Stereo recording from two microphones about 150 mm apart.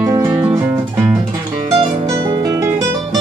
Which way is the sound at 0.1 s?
25° right (ahead or behind).